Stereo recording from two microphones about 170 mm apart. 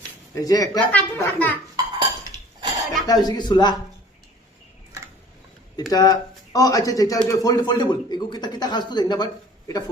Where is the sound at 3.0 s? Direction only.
20° left (ahead or behind).